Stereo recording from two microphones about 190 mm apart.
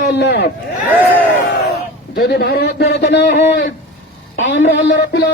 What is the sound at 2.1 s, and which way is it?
A man's voice, 60° left (ahead or behind).